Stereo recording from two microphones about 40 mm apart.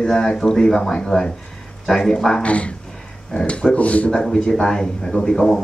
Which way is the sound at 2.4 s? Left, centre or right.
Left.